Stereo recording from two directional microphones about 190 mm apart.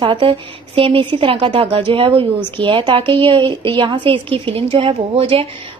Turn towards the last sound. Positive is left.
turn(degrees=-30)  # may be behind; listen again after turning